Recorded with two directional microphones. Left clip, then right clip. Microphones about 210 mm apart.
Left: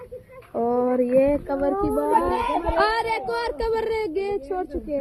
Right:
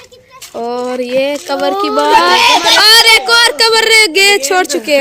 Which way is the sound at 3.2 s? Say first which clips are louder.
Right 17 dB; 10° right (ahead or behind).